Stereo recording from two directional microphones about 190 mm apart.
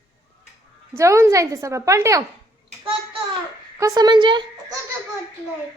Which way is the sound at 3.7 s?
20° right (ahead or behind).